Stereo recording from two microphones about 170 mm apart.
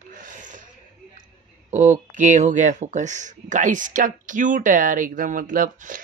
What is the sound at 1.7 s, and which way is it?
Speech, 45° right (ahead or behind).